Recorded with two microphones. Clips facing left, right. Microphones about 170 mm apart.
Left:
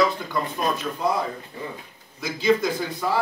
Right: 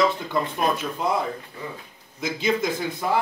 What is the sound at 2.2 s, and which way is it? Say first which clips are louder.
Speech: left 4 dB; 20° right (ahead or behind).